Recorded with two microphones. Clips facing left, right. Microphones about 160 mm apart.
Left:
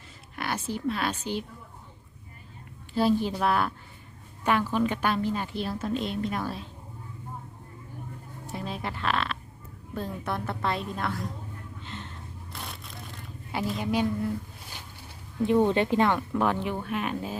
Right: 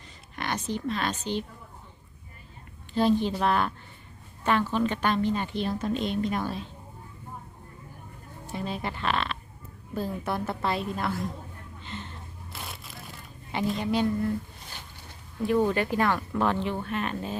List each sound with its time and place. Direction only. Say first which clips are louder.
0.3 s a woman's voice: right 1 dB; 5° left (ahead or behind)
2.9 s a woman's voice: right 1 dB; 5° left (ahead or behind)
8.4 s a woman's voice: right 2 dB; centre (ahead or behind)
11.8 s a sound: right 4 dB; centre (ahead or behind)
15.4 s speech: left 2 dB; 25° left (ahead or behind); by 17.3 s 10° left (ahead or behind)